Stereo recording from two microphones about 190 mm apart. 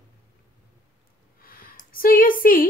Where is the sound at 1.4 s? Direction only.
50° left (ahead or behind).